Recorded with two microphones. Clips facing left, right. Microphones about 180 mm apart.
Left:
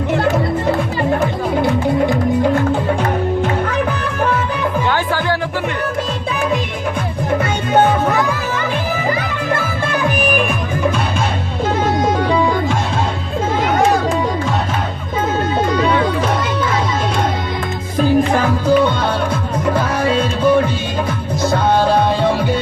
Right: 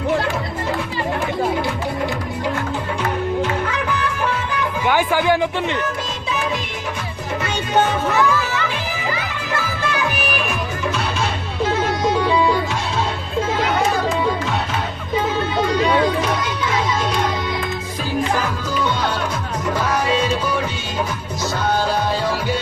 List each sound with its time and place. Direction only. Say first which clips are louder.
4.9 s music: right 6 dB; 15° right (ahead or behind)
7.7 s music: left 5 dB; 55° left (ahead or behind)
9.5 s music: left 3 dB; 55° left (ahead or behind)
12.0 s music: right 1 dB; 50° left (ahead or behind)
16.4 s music: left 4 dB; 55° left (ahead or behind)
18.7 s music: left 8 dB; 55° left (ahead or behind)